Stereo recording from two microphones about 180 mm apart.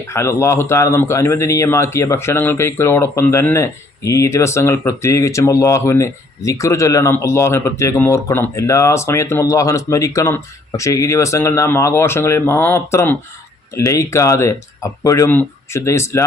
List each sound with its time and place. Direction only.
0.1 s speech: 15° left (ahead or behind)